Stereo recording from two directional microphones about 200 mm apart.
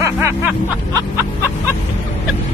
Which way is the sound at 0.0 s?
15° right (ahead or behind).